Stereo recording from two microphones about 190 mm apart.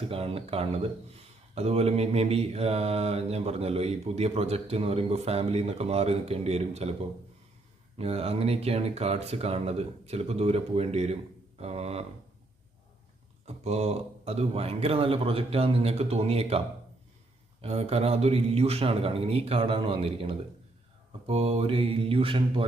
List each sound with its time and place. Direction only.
0.1 s speech: 30° right (ahead or behind)
13.4 s speech: 35° right (ahead or behind)
21.2 s mantra: 30° right (ahead or behind)